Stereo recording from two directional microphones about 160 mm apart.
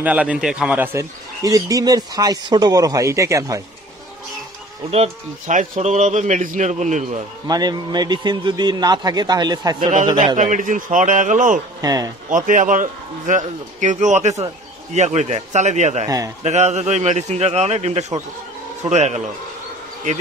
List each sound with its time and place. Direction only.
0.0 s a man's voice: 10° right (ahead or behind)
1.4 s a man's voice: 20° right (ahead or behind)
4.9 s speech: 45° right (ahead or behind)
7.4 s a man's voice: 25° right (ahead or behind)
10.3 s speech: 50° right (ahead or behind)
11.8 s a man's voice: 25° right (ahead or behind)
12.3 s speech: 55° right (ahead or behind)